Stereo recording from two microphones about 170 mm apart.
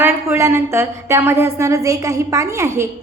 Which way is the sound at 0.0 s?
15° right (ahead or behind).